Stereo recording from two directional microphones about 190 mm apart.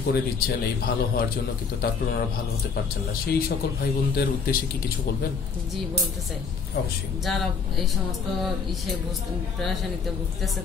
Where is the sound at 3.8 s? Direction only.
55° left (ahead or behind).